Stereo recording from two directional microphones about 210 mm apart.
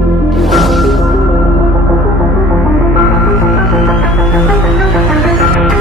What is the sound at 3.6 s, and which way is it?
Music, centre (ahead or behind).